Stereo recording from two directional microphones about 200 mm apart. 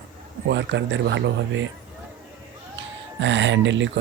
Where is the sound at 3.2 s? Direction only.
65° right (ahead or behind).